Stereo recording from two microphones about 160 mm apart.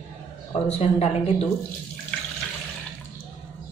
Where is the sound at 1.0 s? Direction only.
40° left (ahead or behind).